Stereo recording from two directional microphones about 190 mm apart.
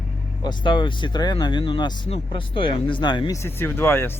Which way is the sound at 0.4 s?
25° left (ahead or behind).